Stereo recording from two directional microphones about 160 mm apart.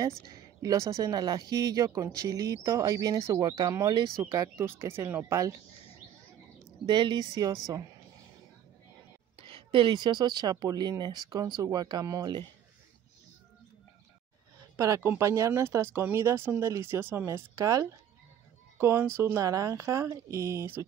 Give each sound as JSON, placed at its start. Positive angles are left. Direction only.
{"t": 0.2, "sound": "speech", "side_deg": -25}
{"t": 6.9, "sound": "speech", "side_deg": -30}
{"t": 9.4, "sound": "speech", "side_deg": -35}
{"t": 15.0, "sound": "speech", "side_deg": -20}